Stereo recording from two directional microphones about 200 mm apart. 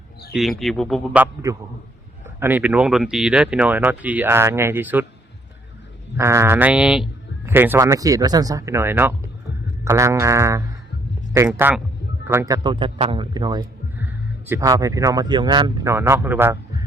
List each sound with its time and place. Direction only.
0.6 s speech: centre (ahead or behind)
1.2 s speech: 15° right (ahead or behind)
6.1 s speech: 15° right (ahead or behind)
12.6 s a man's voice: 25° right (ahead or behind)
14.0 s speech: 10° right (ahead or behind)